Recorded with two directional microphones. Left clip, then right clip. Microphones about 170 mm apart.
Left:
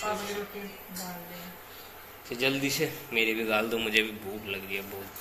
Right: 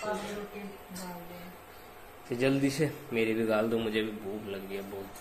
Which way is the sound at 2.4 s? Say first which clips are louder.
Left 1 dB; 40° right (ahead or behind).